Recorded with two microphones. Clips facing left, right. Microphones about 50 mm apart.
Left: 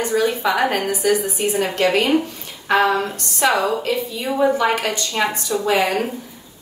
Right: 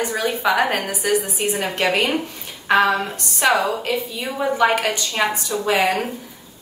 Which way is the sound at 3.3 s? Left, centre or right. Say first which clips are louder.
Even; centre.